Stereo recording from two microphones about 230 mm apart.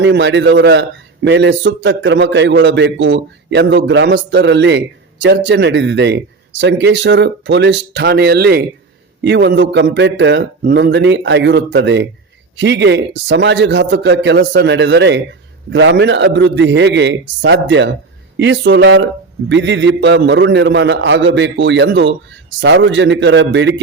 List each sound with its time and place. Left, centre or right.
0.0 s a man's voice: right